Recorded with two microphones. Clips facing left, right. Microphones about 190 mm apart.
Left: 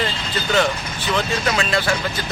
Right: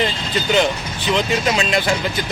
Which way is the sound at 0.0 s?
20° right (ahead or behind).